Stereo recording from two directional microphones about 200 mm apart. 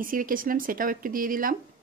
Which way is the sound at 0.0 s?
45° right (ahead or behind).